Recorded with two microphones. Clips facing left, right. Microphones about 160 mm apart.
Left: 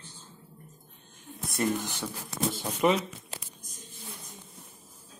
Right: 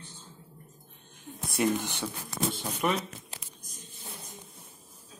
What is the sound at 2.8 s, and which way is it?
Speech, 20° left (ahead or behind).